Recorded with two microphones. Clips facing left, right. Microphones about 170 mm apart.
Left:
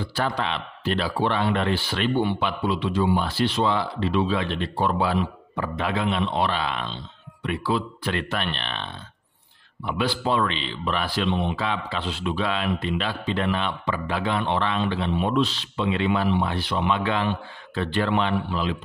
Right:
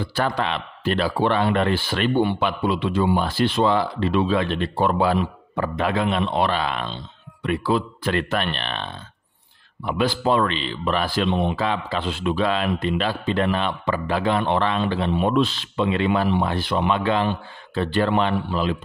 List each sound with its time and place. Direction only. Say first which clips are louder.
0.0 s a man's voice: right 3 dB; 55° right (ahead or behind)
9.8 s a man's voice: right 4 dB; 45° right (ahead or behind)